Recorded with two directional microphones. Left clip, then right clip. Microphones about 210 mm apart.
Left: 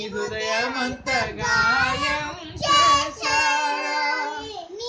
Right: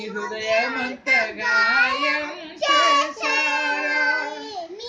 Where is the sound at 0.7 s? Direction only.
20° left (ahead or behind).